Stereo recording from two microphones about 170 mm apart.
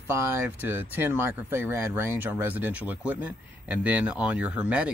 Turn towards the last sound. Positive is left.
turn(degrees=-5)  # may be behind; listen again after turning